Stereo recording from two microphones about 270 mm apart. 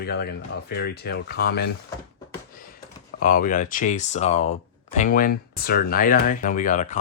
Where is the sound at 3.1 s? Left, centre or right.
Left.